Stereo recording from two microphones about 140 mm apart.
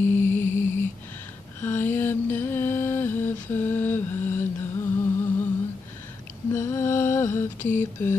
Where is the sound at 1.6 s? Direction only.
15° left (ahead or behind).